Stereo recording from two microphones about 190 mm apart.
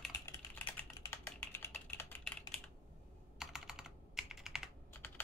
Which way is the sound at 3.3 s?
Centre (ahead or behind).